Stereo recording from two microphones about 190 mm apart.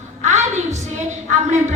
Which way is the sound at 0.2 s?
40° right (ahead or behind).